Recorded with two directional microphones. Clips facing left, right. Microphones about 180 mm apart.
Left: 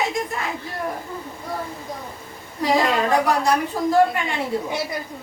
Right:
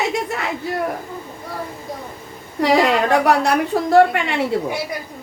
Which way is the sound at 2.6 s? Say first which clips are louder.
Right 4 dB; 70° right (ahead or behind).